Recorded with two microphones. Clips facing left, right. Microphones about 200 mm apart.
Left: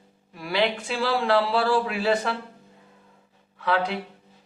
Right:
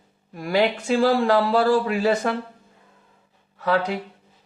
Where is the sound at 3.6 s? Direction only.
40° right (ahead or behind).